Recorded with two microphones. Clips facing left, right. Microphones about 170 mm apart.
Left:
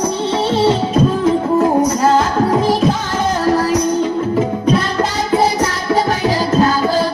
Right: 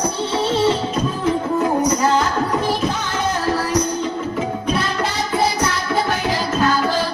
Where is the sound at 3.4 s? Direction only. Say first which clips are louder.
Left 6 dB; 45° left (ahead or behind).